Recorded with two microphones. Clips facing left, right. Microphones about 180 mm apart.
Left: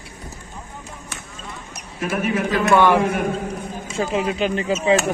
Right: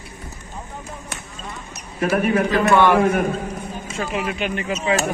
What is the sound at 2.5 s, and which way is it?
Speech, 10° left (ahead or behind).